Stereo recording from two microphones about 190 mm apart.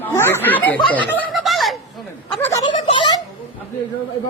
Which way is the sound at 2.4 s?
10° left (ahead or behind).